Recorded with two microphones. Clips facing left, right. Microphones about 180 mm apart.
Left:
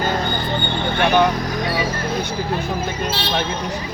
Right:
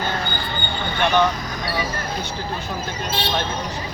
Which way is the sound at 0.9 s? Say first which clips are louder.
Left 2 dB; 55° left (ahead or behind).